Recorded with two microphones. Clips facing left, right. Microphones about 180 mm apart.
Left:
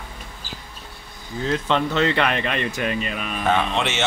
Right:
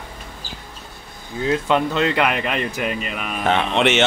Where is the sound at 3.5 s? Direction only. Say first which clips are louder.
Right 4 dB; 65° right (ahead or behind).